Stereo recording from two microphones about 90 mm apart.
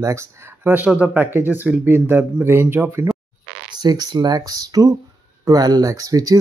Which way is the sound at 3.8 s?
50° right (ahead or behind).